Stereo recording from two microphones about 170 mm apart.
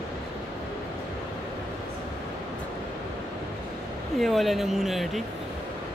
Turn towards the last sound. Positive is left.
turn(degrees=0)  # may be behind; listen again after turning